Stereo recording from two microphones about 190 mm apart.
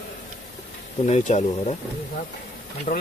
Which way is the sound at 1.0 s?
35° left (ahead or behind).